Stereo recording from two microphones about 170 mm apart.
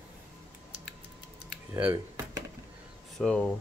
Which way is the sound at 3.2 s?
5° left (ahead or behind).